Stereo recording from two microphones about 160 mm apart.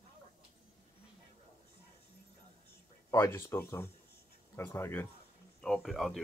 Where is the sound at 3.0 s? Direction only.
15° left (ahead or behind).